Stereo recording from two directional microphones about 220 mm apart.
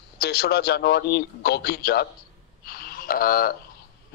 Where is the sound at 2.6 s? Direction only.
40° left (ahead or behind).